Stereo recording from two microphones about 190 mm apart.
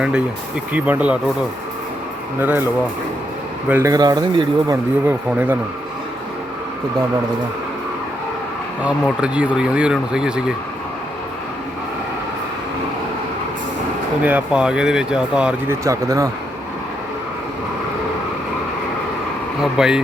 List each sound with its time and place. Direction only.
0.7 s speech: 10° right (ahead or behind)
2.4 s speech: 10° right (ahead or behind)
3.7 s a man's voice: 15° right (ahead or behind)
8.8 s speech: 5° right (ahead or behind)
14.2 s speech: 10° right (ahead or behind)
15.8 s speech: 15° right (ahead or behind)
19.7 s speech: 5° right (ahead or behind)